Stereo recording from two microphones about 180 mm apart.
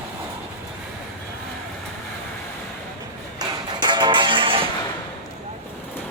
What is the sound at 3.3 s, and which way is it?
Music, 25° right (ahead or behind).